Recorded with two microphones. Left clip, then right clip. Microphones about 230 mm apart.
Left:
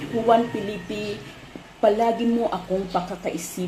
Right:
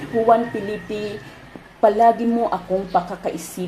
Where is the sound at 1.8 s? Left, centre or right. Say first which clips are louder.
Right 5 dB; centre.